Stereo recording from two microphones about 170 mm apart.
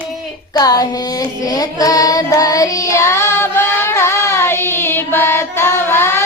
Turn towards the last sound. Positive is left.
turn(degrees=15)  # may be behind; listen again after turning